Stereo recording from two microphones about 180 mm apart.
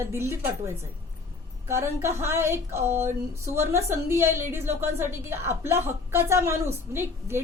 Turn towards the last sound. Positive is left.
turn(degrees=-15)  # may be behind; listen again after turning